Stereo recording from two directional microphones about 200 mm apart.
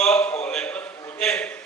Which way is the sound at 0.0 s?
10° left (ahead or behind).